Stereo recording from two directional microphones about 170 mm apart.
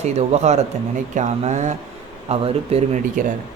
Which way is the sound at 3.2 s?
50° right (ahead or behind).